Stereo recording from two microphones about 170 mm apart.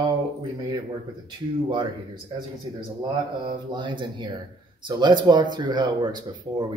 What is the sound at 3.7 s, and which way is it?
Speech, 30° right (ahead or behind).